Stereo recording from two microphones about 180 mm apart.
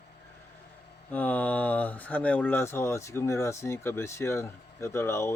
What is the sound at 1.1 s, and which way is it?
Speech, 10° left (ahead or behind).